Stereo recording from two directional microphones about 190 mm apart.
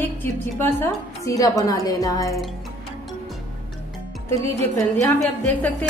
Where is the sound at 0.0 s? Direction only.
10° left (ahead or behind).